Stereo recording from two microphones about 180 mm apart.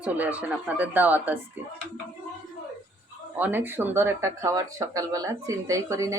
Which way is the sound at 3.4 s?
10° right (ahead or behind).